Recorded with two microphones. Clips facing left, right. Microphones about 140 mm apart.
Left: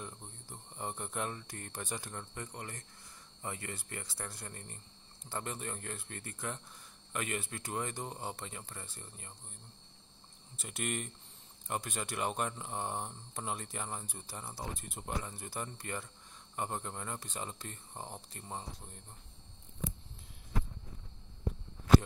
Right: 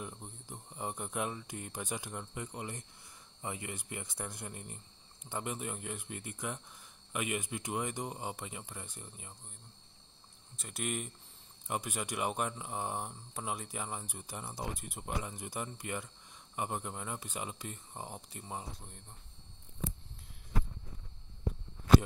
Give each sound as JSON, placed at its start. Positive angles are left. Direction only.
{"t": 0.0, "sound": "speech", "side_deg": -15}
{"t": 10.5, "sound": "speech", "side_deg": 0}